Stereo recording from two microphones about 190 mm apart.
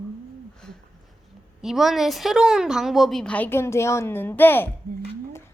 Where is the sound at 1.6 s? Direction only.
Centre (ahead or behind).